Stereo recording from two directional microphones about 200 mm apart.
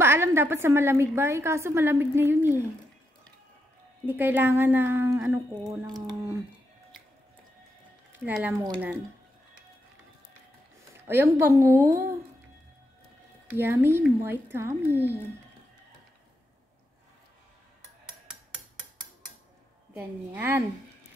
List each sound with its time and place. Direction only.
0.0 s a woman's voice: 10° right (ahead or behind)
4.0 s a woman's voice: 10° right (ahead or behind)
8.1 s speech: 10° right (ahead or behind)
11.1 s a woman's voice: 10° right (ahead or behind)
13.5 s a woman's voice: 10° right (ahead or behind)
19.9 s a woman's voice: 10° right (ahead or behind)